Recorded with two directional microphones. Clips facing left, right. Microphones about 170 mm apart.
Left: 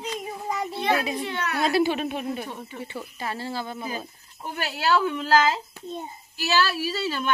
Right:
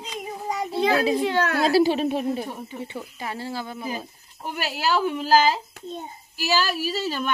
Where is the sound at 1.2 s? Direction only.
90° right.